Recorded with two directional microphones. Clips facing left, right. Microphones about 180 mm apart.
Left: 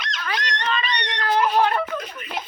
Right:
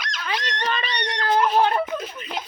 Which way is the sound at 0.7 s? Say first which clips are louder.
Left 1 dB; 40° right (ahead or behind).